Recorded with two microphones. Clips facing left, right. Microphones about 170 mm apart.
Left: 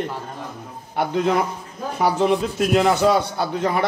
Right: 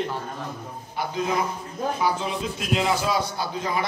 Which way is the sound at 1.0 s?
65° left (ahead or behind).